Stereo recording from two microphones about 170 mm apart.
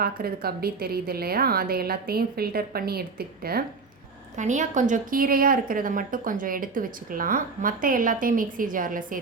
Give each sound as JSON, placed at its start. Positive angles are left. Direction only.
{"t": 0.0, "sound": "a woman's voice", "side_deg": -65}
{"t": 4.4, "sound": "a woman's voice", "side_deg": -45}